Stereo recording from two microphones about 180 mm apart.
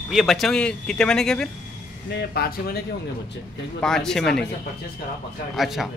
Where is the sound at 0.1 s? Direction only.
Centre (ahead or behind).